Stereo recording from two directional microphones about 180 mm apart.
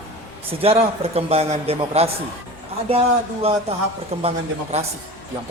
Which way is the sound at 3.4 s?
35° right (ahead or behind).